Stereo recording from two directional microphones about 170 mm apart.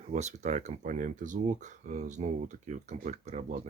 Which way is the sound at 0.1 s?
45° right (ahead or behind).